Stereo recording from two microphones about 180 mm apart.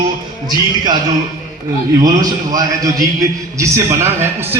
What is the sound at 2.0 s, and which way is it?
A man's voice, 20° right (ahead or behind).